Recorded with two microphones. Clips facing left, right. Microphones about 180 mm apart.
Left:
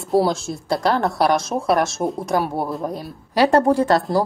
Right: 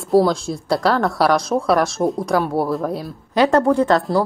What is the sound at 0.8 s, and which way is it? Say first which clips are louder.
Speech: right 1 dB; 20° left (ahead or behind).